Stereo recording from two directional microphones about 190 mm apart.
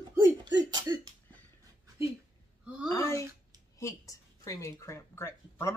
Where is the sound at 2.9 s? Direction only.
15° left (ahead or behind).